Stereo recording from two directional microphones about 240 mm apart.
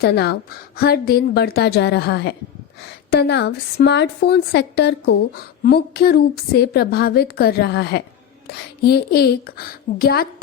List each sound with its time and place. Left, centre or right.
0.0 s a woman's voice: left